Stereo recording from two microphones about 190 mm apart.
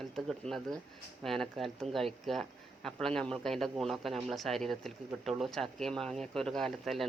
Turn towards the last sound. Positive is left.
turn(degrees=0)  # may be behind; listen again after turning